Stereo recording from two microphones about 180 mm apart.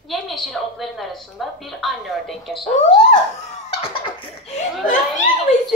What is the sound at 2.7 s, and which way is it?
Laughter, 40° left (ahead or behind).